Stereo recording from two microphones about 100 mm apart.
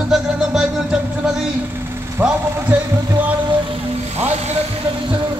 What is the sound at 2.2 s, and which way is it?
Speech, 20° right (ahead or behind).